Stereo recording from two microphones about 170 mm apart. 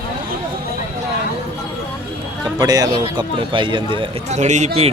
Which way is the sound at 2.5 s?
20° right (ahead or behind).